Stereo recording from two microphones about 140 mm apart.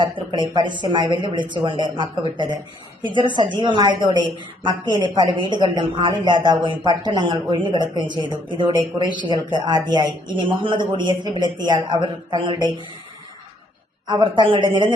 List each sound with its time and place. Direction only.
0.0 s a woman's voice: 35° right (ahead or behind)
14.1 s a woman's voice: 35° right (ahead or behind)